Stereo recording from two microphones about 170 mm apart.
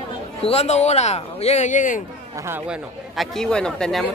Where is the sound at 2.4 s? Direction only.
10° right (ahead or behind).